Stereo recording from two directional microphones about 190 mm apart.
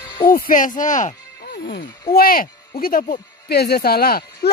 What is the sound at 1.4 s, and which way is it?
Music, 60° left (ahead or behind).